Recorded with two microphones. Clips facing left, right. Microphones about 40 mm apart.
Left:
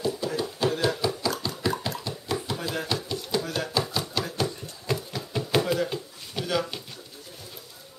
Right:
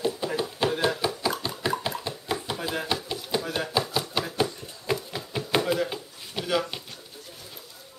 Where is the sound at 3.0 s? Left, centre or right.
Centre.